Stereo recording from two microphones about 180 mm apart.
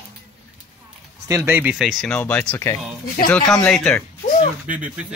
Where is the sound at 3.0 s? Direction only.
50° left (ahead or behind).